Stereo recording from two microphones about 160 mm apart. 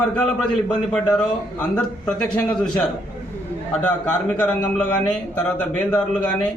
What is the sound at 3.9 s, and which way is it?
A man's voice, 10° left (ahead or behind).